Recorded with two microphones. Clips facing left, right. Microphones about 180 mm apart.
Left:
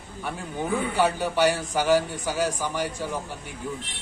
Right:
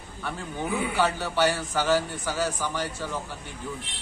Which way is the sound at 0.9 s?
15° left (ahead or behind).